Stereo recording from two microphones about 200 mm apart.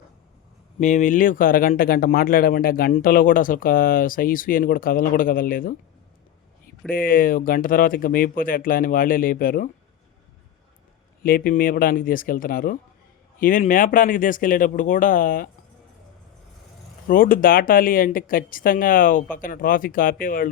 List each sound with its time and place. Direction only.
0.8 s speech: 35° left (ahead or behind)
6.9 s speech: 45° left (ahead or behind)
11.2 s speech: 45° left (ahead or behind)
17.1 s speech: 45° left (ahead or behind)